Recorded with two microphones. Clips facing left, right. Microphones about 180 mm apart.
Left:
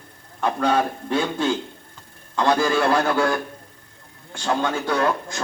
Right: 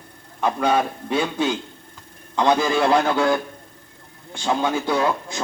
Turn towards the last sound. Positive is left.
turn(degrees=-10)  # may be behind; listen again after turning